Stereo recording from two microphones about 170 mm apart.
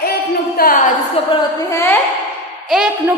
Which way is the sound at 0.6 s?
55° left (ahead or behind).